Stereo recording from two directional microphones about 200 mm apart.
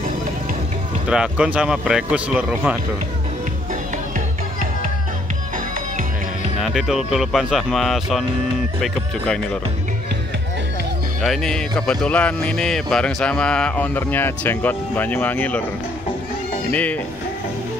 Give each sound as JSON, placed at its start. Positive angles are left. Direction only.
{"t": 1.0, "sound": "speech", "side_deg": -5}
{"t": 6.6, "sound": "speech", "side_deg": 0}
{"t": 11.2, "sound": "speech", "side_deg": 5}
{"t": 16.7, "sound": "speech", "side_deg": 5}